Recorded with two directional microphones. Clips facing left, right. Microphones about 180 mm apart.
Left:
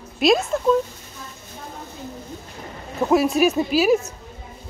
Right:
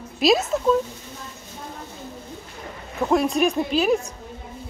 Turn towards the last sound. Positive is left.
turn(degrees=5)  # may be behind; listen again after turning